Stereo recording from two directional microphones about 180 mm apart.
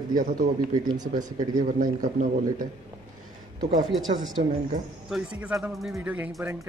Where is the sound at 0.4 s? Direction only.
20° right (ahead or behind).